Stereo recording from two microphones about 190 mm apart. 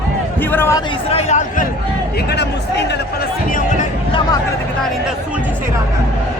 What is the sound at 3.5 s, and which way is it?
Speech, 45° left (ahead or behind).